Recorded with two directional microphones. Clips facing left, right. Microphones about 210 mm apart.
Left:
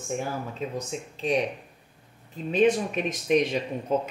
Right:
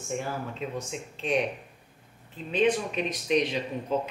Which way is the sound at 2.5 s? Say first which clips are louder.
Left 3 dB; 45° left (ahead or behind).